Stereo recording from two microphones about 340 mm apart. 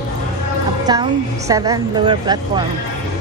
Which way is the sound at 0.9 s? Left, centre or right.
Centre.